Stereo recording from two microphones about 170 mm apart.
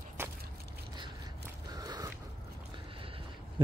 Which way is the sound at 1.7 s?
20° right (ahead or behind).